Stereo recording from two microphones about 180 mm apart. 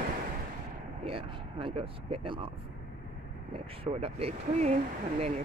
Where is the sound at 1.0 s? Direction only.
30° right (ahead or behind).